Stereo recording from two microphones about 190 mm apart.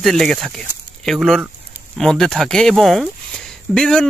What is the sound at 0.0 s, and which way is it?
Speech, centre (ahead or behind).